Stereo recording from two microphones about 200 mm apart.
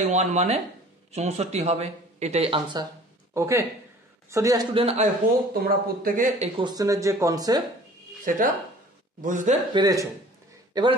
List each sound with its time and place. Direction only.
0.0 s speech: 35° right (ahead or behind); by 4.6 s 15° right (ahead or behind)
4.7 s speech: 30° right (ahead or behind)
5.5 s speech: 50° right (ahead or behind)
6.6 s speech: 20° right (ahead or behind)
8.3 s speech: 40° right (ahead or behind)
9.8 s a man's voice: 20° right (ahead or behind)